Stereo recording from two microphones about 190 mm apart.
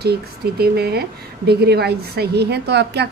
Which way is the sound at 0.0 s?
55° right (ahead or behind).